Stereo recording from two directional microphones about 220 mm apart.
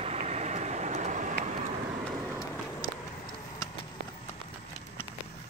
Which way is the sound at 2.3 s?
15° left (ahead or behind).